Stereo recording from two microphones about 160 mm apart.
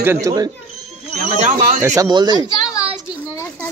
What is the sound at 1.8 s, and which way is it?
Speech, 20° right (ahead or behind).